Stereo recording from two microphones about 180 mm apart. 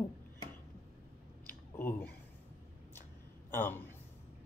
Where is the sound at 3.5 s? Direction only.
10° left (ahead or behind).